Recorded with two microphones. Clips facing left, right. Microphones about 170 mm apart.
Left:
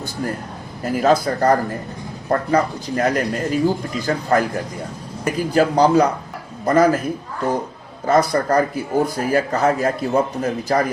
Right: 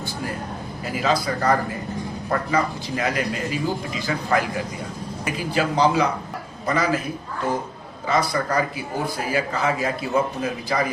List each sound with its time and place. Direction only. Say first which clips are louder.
0.9 s speech: left 6 dB; 50° left (ahead or behind)
8.0 s speech: left 6 dB; 45° left (ahead or behind)